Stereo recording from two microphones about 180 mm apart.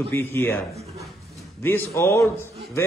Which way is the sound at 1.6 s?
10° left (ahead or behind).